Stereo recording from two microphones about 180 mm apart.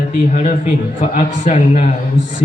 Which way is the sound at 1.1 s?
45° left (ahead or behind).